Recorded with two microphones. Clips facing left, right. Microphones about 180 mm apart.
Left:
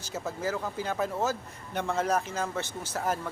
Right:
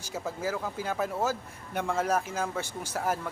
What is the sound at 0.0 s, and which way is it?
Speech, 10° right (ahead or behind).